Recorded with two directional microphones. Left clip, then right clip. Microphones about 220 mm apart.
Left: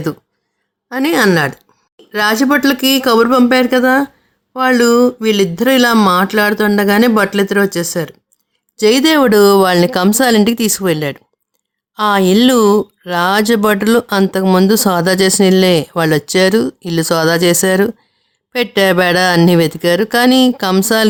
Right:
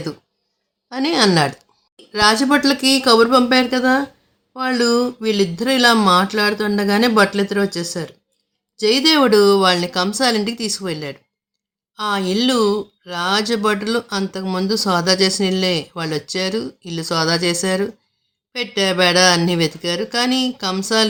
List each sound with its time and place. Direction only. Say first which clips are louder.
0.9 s a woman's voice: left 4 dB; 25° left (ahead or behind); by 21.1 s 50° left (ahead or behind)